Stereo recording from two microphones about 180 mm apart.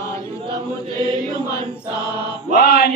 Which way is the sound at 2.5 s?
55° left (ahead or behind).